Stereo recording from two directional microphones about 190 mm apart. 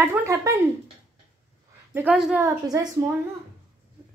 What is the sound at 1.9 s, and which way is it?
Speech, 10° right (ahead or behind).